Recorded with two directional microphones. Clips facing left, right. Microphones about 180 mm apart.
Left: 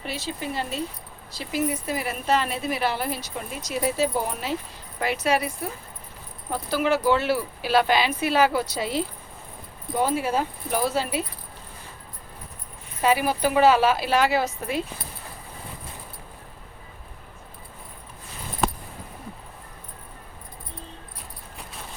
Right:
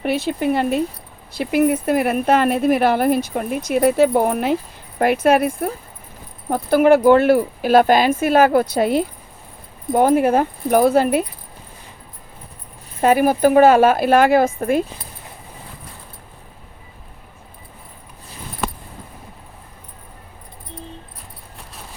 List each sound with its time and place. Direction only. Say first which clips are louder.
0.0 s speech: right 12 dB; 60° right (ahead or behind)
13.0 s speech: right 8 dB; 50° right (ahead or behind)